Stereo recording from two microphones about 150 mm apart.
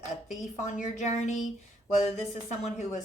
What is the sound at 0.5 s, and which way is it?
Speech, 55° left (ahead or behind).